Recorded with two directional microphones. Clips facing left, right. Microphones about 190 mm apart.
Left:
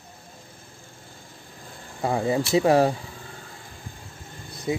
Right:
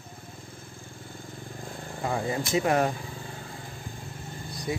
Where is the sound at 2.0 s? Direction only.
35° left (ahead or behind).